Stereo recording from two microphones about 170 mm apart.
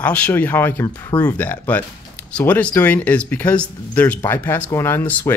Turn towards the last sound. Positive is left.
turn(degrees=10)  # may be behind; listen again after turning